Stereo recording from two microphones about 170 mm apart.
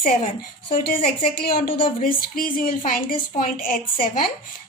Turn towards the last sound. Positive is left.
turn(degrees=55)  # may be behind; listen again after turning